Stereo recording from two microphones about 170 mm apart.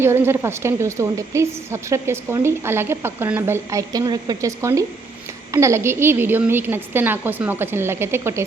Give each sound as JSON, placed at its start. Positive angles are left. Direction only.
{"t": 0.0, "sound": "a woman's voice", "side_deg": -15}